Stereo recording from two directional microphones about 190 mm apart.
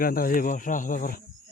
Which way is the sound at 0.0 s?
50° left (ahead or behind).